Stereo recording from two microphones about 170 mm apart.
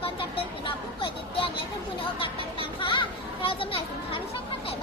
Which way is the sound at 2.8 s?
30° left (ahead or behind).